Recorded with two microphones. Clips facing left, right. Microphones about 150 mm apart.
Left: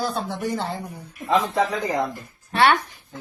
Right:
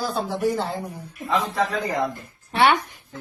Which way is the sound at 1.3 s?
20° left (ahead or behind).